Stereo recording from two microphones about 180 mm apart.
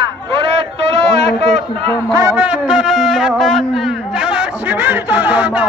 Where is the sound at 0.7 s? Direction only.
75° left (ahead or behind).